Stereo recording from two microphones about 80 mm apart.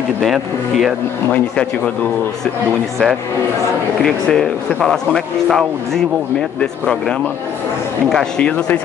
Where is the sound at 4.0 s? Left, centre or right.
Centre.